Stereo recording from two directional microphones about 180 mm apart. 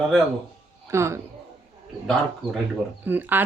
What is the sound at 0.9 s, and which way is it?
Speech, 15° right (ahead or behind).